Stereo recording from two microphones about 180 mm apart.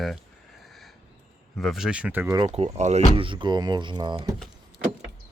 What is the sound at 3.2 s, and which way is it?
Speech, 25° right (ahead or behind).